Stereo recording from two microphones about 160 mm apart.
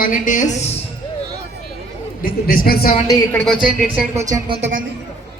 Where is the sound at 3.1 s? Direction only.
15° left (ahead or behind).